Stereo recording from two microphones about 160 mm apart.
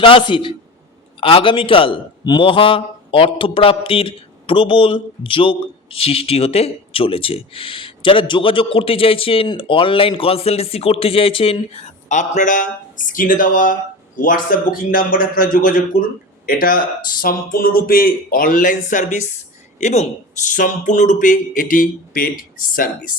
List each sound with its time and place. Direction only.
0.0 s a man's voice: 30° left (ahead or behind); by 22.9 s 60° left (ahead or behind)